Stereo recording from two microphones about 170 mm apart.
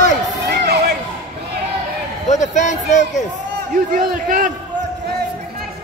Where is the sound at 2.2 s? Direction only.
45° left (ahead or behind).